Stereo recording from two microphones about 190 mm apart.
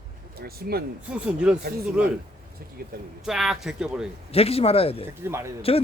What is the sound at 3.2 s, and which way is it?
Speech, centre (ahead or behind).